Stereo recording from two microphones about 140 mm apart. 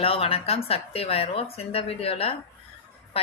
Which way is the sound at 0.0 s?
40° left (ahead or behind).